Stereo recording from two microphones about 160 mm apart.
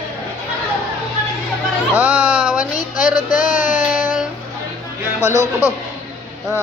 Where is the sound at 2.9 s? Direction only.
55° left (ahead or behind).